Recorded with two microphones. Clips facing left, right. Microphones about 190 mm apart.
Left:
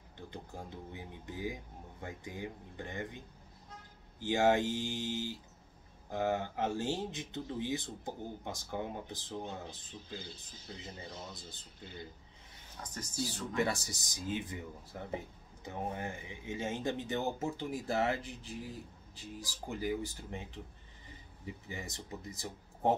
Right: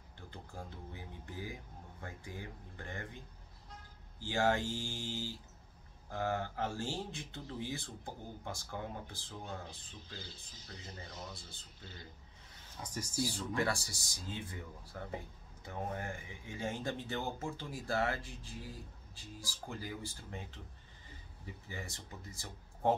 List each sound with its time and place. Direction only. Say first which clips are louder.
0.3 s speech: left 2 dB; 20° left (ahead or behind)
4.2 s speech: left 4 dB; 20° left (ahead or behind)
12.8 s speech: right 2 dB; 10° right (ahead or behind)
13.6 s speech: left 3 dB; 20° left (ahead or behind)
21.6 s speech: left 2 dB; 20° left (ahead or behind)